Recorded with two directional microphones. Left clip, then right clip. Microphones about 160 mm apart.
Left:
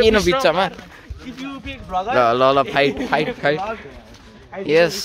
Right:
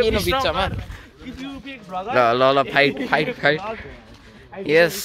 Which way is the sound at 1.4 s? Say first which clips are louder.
Left 5 dB; 15° left (ahead or behind).